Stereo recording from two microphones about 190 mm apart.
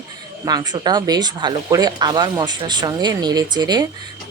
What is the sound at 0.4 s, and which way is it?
Speech, 20° right (ahead or behind).